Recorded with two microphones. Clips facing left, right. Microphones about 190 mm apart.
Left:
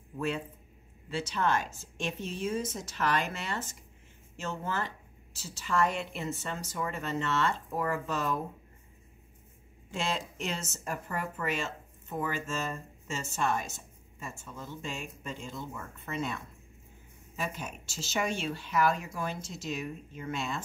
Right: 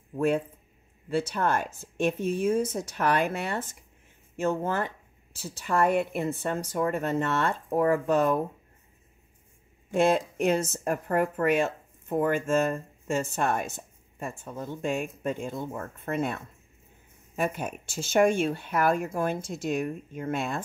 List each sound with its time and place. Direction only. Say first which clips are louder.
1.1 s speech: right 4 dB; 55° right (ahead or behind)
9.8 s speech: right 11 dB; 55° right (ahead or behind)
17.4 s speech: right 8 dB; 55° right (ahead or behind)